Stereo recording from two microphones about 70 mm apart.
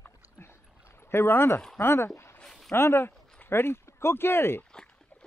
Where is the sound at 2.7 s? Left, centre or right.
Left.